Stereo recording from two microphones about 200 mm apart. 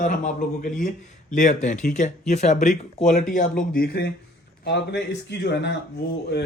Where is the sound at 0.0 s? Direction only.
40° left (ahead or behind); by 5.8 s 60° left (ahead or behind).